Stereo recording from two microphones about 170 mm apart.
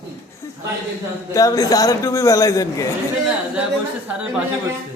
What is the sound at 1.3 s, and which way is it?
A man's voice, 20° left (ahead or behind).